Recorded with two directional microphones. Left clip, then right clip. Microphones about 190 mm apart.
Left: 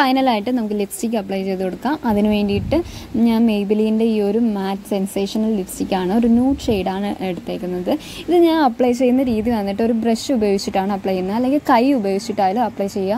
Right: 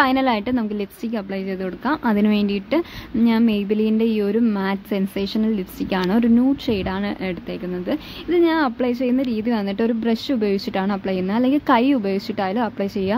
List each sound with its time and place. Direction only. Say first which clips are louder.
0.0 s a woman's voice: left 2 dB; 10° left (ahead or behind)